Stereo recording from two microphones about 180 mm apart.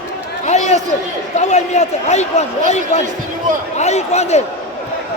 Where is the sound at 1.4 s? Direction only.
40° left (ahead or behind).